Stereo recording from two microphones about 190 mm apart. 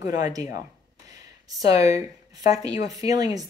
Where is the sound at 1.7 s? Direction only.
35° left (ahead or behind).